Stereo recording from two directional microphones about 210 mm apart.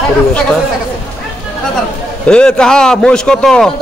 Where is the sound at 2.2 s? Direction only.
5° left (ahead or behind).